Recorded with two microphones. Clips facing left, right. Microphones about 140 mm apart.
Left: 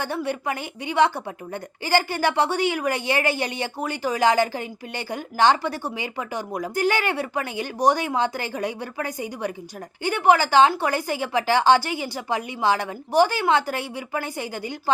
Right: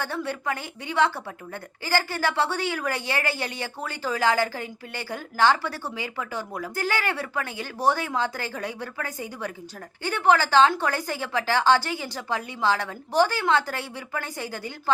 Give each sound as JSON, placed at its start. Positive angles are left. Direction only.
{"t": 0.0, "sound": "a woman's voice", "side_deg": 15}